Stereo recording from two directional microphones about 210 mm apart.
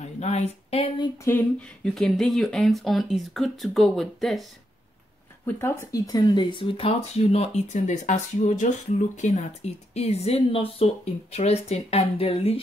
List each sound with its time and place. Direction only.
0.0 s speech: 30° left (ahead or behind)
1.2 s speech: 10° left (ahead or behind)
5.6 s speech: 15° left (ahead or behind)